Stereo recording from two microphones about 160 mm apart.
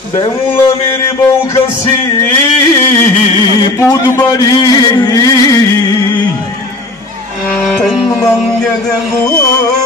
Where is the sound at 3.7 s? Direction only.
20° left (ahead or behind).